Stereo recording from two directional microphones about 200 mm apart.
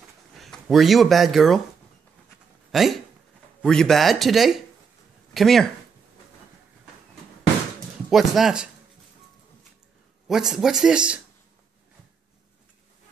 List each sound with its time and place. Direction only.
0.4 s speech: centre (ahead or behind)
2.7 s speech: centre (ahead or behind)
8.1 s speech: centre (ahead or behind)
10.2 s speech: 5° right (ahead or behind)